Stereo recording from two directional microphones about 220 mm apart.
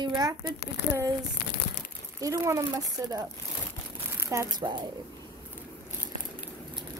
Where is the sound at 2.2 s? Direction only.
15° right (ahead or behind).